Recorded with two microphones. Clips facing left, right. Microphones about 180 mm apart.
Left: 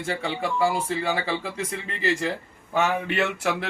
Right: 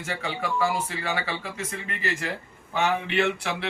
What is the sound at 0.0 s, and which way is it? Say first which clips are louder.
Speech: left 3 dB; 30° left (ahead or behind).